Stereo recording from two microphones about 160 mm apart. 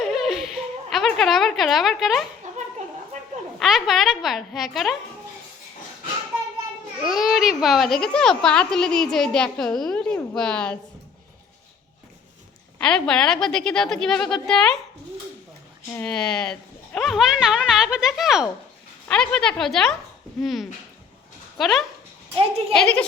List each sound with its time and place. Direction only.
0.0 s a sound: centre (ahead or behind)
2.4 s a sound: 50° right (ahead or behind)
3.6 s a child's voice: centre (ahead or behind)
7.0 s a child's voice: centre (ahead or behind)
12.8 s a child's voice: 5° left (ahead or behind)
15.9 s a child's voice: 10° left (ahead or behind)